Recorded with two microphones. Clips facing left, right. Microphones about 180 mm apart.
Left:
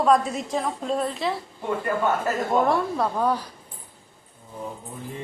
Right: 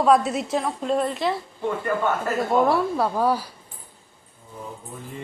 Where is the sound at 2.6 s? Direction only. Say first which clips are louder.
Right 2 dB; 5° right (ahead or behind).